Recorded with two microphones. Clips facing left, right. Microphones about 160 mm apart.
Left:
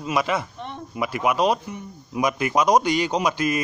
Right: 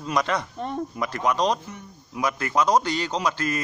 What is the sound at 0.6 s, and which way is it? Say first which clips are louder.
Speech: right 6 dB; 40° right (ahead or behind).